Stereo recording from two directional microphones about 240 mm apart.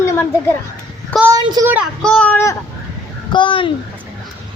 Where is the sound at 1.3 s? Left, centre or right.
Centre.